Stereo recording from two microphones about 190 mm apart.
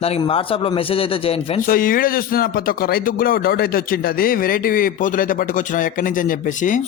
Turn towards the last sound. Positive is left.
turn(degrees=40)  # may be behind; listen again after turning